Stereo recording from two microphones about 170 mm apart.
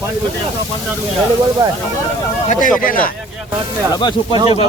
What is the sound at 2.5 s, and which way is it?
Speech, 50° left (ahead or behind).